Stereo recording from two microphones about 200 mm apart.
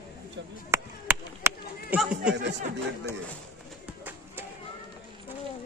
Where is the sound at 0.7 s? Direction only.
10° right (ahead or behind).